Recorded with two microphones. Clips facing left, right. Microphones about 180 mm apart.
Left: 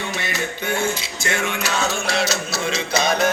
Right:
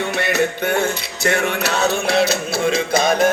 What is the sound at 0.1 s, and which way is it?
Music, 65° right (ahead or behind).